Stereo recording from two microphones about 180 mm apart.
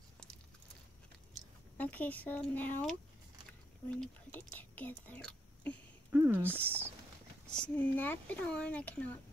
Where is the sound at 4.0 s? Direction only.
10° left (ahead or behind).